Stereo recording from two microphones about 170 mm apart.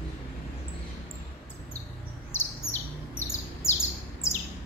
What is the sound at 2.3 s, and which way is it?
Chirp, 15° left (ahead or behind).